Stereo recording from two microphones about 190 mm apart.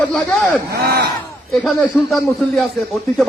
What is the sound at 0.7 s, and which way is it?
Speech, 60° right (ahead or behind).